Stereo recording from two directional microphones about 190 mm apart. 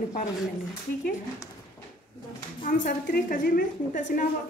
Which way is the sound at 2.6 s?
45° left (ahead or behind).